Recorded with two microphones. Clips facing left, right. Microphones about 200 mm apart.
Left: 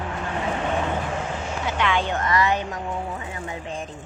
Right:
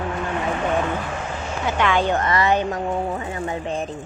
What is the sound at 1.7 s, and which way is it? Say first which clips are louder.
Speech: right 5 dB; 45° right (ahead or behind).